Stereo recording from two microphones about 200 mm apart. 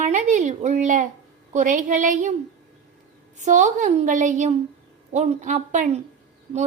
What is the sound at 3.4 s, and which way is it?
A woman's voice, 35° right (ahead or behind).